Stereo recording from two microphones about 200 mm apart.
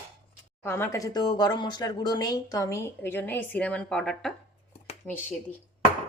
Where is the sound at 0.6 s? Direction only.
10° left (ahead or behind).